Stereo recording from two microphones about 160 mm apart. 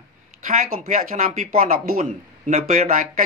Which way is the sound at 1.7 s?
60° right (ahead or behind).